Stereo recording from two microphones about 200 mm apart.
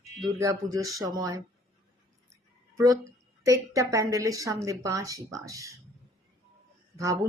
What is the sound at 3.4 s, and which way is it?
A woman's voice, 15° right (ahead or behind).